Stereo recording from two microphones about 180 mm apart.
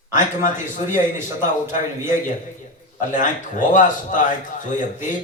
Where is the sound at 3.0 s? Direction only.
45° left (ahead or behind).